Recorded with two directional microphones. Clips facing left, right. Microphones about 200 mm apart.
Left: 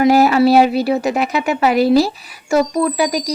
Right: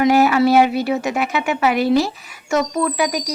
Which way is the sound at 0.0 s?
35° left (ahead or behind).